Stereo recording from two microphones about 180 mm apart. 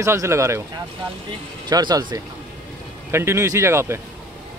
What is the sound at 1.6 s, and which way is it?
Speech, 20° right (ahead or behind).